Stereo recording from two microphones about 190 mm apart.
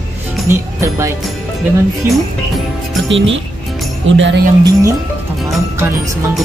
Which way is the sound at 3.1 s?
80° right.